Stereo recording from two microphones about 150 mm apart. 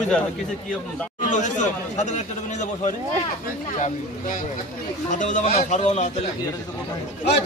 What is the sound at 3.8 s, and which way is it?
Speech, 60° left (ahead or behind).